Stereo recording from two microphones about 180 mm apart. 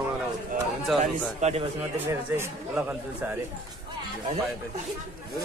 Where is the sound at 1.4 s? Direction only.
40° right (ahead or behind).